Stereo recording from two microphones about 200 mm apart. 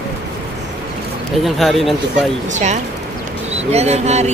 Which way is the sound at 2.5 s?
35° right (ahead or behind).